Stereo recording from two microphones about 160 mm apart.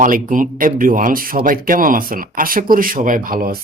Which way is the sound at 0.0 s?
55° right (ahead or behind).